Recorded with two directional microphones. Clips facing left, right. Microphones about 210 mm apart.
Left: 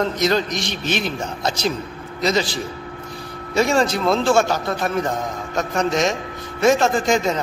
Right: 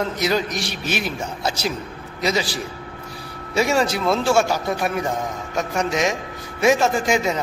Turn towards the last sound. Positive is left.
turn(degrees=-10)  # may be behind; listen again after turning